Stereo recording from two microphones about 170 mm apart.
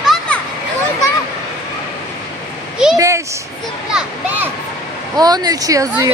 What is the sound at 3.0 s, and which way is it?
Speech, 20° right (ahead or behind).